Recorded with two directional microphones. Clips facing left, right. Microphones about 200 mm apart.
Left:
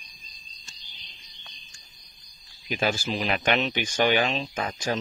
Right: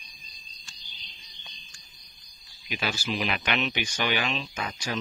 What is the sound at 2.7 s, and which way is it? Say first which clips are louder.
Speech: left 4 dB; 45° left (ahead or behind).